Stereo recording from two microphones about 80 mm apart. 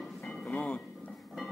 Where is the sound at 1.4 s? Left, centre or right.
Centre.